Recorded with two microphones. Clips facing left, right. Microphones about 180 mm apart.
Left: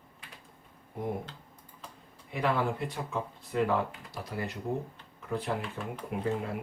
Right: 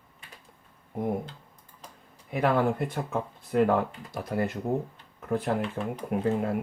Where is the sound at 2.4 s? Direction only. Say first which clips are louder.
Right 5 dB; 50° right (ahead or behind).